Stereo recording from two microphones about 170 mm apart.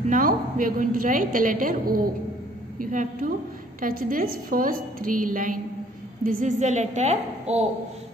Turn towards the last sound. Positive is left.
turn(degrees=-40)  # may be behind; listen again after turning